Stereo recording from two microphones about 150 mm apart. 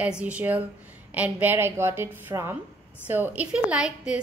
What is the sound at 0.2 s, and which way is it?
A woman's voice, 10° right (ahead or behind).